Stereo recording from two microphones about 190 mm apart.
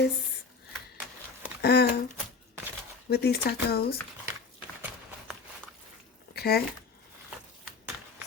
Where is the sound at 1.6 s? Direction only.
60° left (ahead or behind).